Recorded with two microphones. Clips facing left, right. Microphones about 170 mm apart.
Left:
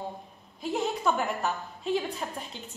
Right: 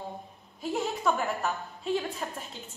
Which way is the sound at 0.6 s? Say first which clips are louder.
Left 1 dB; centre (ahead or behind).